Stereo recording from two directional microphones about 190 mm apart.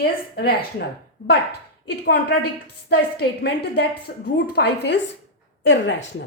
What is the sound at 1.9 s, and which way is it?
A woman's voice, 60° left (ahead or behind).